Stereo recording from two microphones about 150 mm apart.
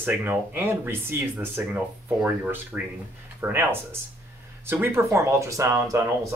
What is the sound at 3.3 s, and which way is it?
Speech, 15° right (ahead or behind).